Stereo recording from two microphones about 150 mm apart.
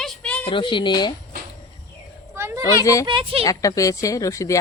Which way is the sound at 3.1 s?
35° right (ahead or behind).